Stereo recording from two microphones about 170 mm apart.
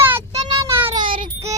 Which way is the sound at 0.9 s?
30° right (ahead or behind).